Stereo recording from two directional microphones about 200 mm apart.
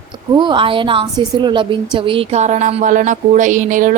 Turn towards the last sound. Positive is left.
turn(degrees=-40)  # may be behind; listen again after turning